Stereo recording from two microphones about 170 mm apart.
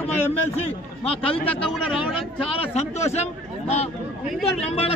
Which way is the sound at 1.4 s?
5° left (ahead or behind).